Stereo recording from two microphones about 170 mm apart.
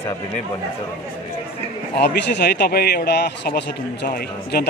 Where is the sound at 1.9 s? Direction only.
85° left.